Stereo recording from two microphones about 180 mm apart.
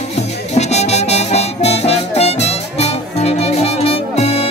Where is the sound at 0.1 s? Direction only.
40° left (ahead or behind).